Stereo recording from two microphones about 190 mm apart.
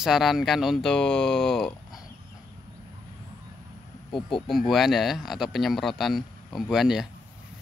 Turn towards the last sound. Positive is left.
turn(degrees=0)  # may be behind; listen again after turning